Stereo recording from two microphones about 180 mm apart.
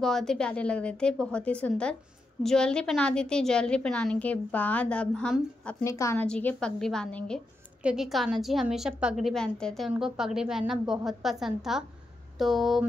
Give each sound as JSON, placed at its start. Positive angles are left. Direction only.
{"t": 0.0, "sound": "a woman's voice", "side_deg": 0}
{"t": 5.9, "sound": "a woman's voice", "side_deg": 15}
{"t": 6.2, "sound": "a woman's voice", "side_deg": 5}